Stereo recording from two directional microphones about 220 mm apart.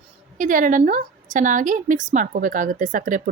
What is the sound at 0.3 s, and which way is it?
A woman's voice, 35° right (ahead or behind).